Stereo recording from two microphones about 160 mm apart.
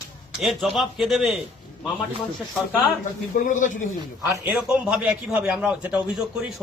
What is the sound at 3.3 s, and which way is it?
Speech, 55° left (ahead or behind).